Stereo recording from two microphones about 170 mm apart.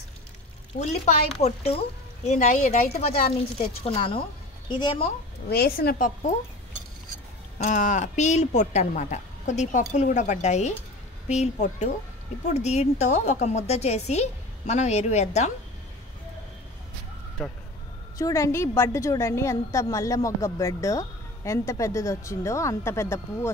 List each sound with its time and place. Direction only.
0.7 s a woman's voice: 40° left (ahead or behind)
5.5 s speech: 60° left (ahead or behind)
7.5 s a woman's voice: 45° left (ahead or behind)
17.4 s speech: centre (ahead or behind)
18.1 s a woman's voice: 20° left (ahead or behind)